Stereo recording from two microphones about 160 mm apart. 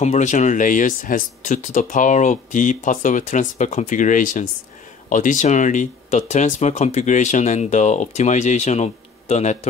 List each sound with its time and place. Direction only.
0.0 s speech: 45° left (ahead or behind)